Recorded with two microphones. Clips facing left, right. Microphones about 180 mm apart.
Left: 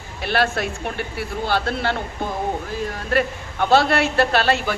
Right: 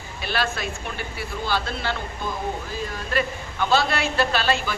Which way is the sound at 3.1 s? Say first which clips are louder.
Left 5 dB; 60° left (ahead or behind).